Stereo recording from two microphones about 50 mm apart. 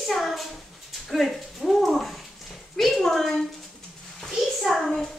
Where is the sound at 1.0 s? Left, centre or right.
Centre.